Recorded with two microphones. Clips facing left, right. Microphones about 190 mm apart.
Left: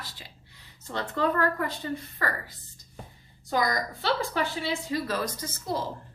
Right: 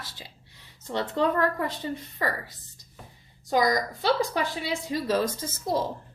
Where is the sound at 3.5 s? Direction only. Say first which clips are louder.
Right 4 dB; 15° right (ahead or behind).